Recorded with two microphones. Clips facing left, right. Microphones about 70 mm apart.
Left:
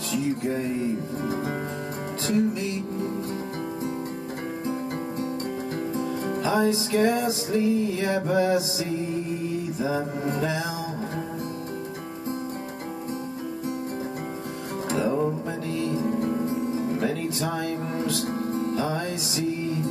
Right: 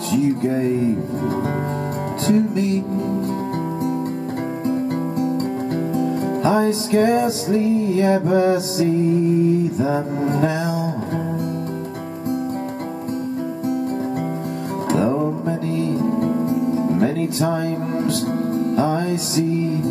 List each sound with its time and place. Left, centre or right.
6.4 s music: right
9.8 s music: right
15.8 s music: right
18.8 s music: right